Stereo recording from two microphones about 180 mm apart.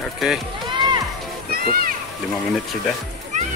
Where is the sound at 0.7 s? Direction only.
25° right (ahead or behind).